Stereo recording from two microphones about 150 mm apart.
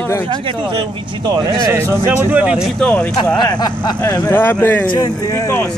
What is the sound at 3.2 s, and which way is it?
Speech, 30° left (ahead or behind).